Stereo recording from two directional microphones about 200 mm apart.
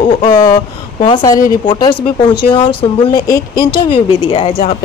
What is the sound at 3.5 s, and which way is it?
Speech, 50° left (ahead or behind).